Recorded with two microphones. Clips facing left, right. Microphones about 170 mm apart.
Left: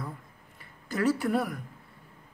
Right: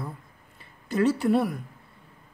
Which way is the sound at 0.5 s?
25° right (ahead or behind).